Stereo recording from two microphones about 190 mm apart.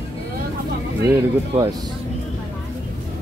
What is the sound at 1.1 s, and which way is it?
Speech, 20° right (ahead or behind).